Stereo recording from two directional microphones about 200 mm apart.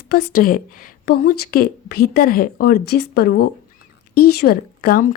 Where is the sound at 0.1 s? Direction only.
50° left (ahead or behind).